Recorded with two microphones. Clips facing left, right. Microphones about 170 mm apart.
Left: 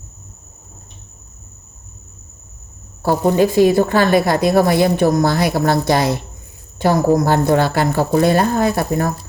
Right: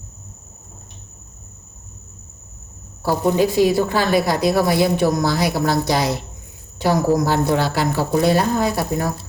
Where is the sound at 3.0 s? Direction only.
55° left (ahead or behind).